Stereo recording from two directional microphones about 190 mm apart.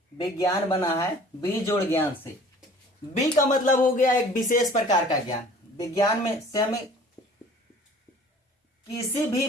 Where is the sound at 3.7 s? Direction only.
45° left (ahead or behind).